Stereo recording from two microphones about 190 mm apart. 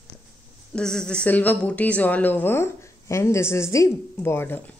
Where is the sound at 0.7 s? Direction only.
5° left (ahead or behind).